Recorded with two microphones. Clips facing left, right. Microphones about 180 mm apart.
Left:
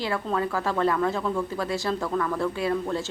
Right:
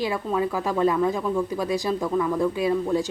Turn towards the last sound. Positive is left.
turn(degrees=-15)  # may be behind; listen again after turning